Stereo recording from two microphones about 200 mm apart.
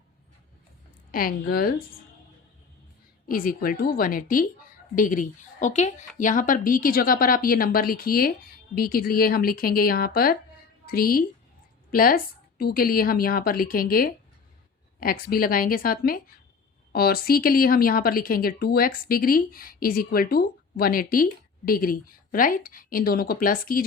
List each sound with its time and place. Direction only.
1.1 s a woman's voice: 45° left (ahead or behind)
3.2 s a woman's voice: 45° left (ahead or behind)